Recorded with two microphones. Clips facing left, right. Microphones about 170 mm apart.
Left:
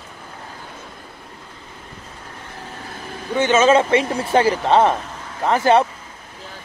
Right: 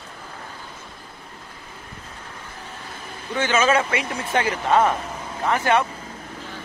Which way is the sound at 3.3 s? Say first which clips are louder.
Left 5 dB; 20° left (ahead or behind).